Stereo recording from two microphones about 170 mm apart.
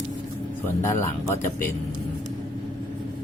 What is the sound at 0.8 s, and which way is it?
Speech, 15° left (ahead or behind).